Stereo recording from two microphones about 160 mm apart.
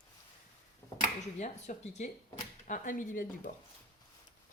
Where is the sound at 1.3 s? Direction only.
45° left (ahead or behind).